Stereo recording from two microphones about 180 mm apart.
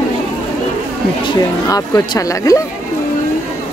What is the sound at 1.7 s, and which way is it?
Speech, 20° left (ahead or behind).